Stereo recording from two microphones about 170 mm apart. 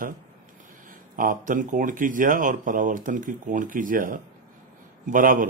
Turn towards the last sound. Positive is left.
turn(degrees=-50)  # may be behind; listen again after turning